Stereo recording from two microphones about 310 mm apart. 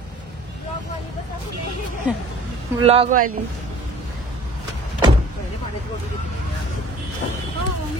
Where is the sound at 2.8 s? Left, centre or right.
Centre.